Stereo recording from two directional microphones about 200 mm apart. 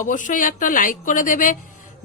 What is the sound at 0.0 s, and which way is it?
A woman's voice, 40° left (ahead or behind).